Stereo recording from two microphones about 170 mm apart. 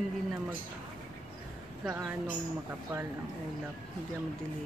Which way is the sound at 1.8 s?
10° right (ahead or behind).